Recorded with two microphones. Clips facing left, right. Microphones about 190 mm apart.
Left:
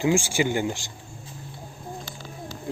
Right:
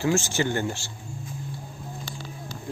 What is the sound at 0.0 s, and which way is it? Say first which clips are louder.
Speech: left 2 dB; 10° left (ahead or behind).